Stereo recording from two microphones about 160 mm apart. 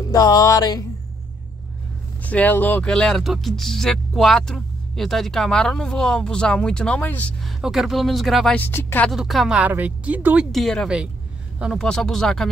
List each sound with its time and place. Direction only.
0.1 s music: 20° left (ahead or behind)
2.2 s speech: 10° left (ahead or behind)
7.6 s speech: centre (ahead or behind)
8.5 s speech: 10° left (ahead or behind)
9.1 s speech: centre (ahead or behind)
10.5 s speech: 5° left (ahead or behind)